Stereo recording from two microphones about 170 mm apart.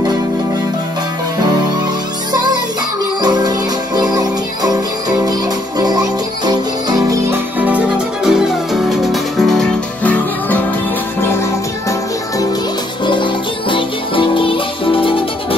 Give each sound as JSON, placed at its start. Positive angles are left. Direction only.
{"t": 3.2, "sound": "music", "side_deg": -25}
{"t": 7.5, "sound": "music", "side_deg": -10}
{"t": 13.0, "sound": "music", "side_deg": 30}